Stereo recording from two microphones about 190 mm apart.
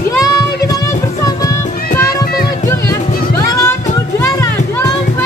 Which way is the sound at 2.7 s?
20° left (ahead or behind).